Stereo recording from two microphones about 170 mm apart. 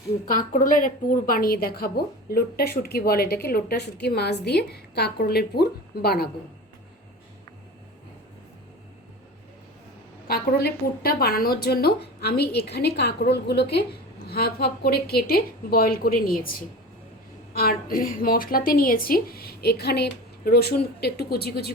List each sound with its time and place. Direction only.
0.3 s a woman's voice: 50° left (ahead or behind)
10.2 s a woman's voice: 65° left (ahead or behind)